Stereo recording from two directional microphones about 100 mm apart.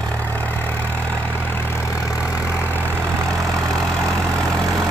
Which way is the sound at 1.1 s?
20° left (ahead or behind).